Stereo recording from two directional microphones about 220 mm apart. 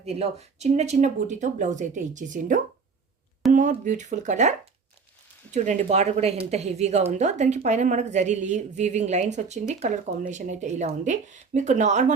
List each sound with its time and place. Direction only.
0.0 s speech: 30° right (ahead or behind)
5.5 s speech: 30° right (ahead or behind)